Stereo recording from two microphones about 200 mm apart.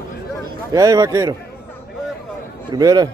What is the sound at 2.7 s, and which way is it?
Speech, 20° right (ahead or behind).